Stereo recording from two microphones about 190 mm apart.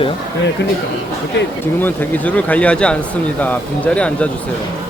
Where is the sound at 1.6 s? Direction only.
10° left (ahead or behind).